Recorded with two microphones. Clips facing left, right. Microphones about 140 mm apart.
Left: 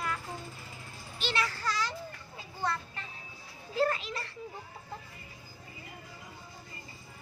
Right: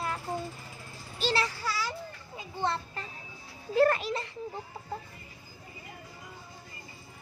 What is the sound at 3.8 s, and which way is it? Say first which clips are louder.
Speech: right 6 dB; 60° right (ahead or behind).